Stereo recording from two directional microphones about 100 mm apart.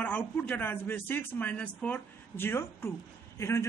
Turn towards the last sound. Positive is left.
turn(degrees=30)  # may be behind; listen again after turning